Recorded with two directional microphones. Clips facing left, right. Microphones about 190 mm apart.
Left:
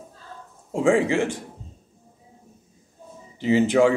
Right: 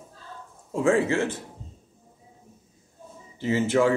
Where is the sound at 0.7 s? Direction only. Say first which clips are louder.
Left 2 dB; 15° left (ahead or behind).